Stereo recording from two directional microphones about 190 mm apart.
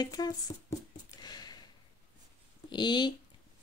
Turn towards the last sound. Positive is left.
turn(degrees=25)  # may be behind; listen again after turning